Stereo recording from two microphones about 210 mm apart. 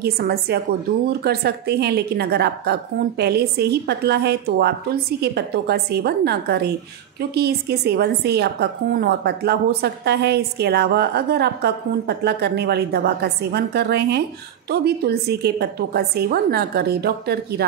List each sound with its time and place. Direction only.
0.0 s a woman's voice: 50° right (ahead or behind)